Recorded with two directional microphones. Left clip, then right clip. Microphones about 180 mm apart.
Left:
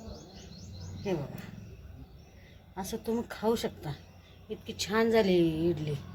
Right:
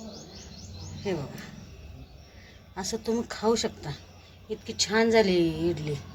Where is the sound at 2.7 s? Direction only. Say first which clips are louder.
Right 4 dB; 10° left (ahead or behind).